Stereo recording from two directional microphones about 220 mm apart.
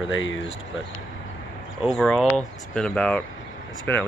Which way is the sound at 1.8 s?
Centre (ahead or behind).